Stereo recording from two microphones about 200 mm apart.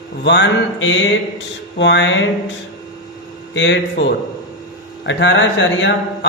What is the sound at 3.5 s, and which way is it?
Speech, 65° left (ahead or behind).